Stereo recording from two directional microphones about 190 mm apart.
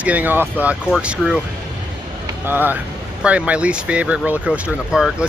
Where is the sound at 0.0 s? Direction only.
10° right (ahead or behind).